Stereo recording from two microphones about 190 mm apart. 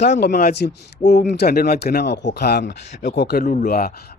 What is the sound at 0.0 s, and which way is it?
A man's voice, 60° left (ahead or behind).